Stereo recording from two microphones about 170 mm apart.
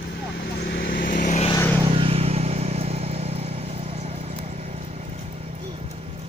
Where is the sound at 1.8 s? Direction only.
30° right (ahead or behind).